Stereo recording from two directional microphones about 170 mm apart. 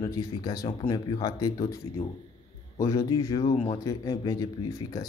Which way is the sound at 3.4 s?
35° left (ahead or behind).